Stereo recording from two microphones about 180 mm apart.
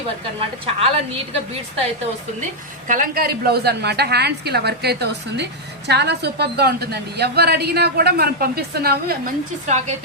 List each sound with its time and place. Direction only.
0.3 s a woman's voice: 35° right (ahead or behind)
2.8 s a woman's voice: 50° right (ahead or behind)